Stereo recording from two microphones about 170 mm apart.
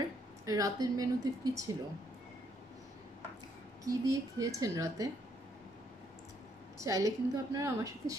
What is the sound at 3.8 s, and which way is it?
A woman's voice, 20° right (ahead or behind).